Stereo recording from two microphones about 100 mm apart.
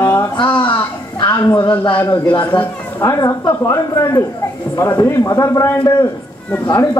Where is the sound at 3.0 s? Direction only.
35° left (ahead or behind).